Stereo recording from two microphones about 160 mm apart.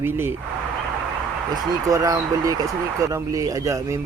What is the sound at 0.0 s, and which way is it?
Speech, 15° right (ahead or behind).